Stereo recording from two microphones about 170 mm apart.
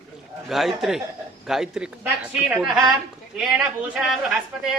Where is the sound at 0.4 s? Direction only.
Centre (ahead or behind).